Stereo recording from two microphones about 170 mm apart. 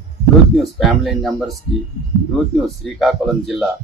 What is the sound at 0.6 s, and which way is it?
Speech, centre (ahead or behind).